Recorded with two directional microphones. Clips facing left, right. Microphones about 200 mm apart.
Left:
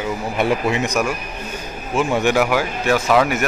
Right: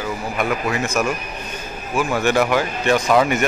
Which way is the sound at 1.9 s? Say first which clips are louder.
Left 2 dB; 25° left (ahead or behind).